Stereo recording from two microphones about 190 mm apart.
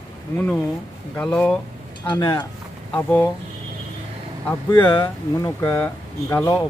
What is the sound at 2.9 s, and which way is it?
Speech, 10° left (ahead or behind).